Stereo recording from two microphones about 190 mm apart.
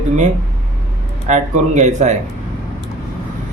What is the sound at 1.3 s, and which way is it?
Speech, 40° right (ahead or behind).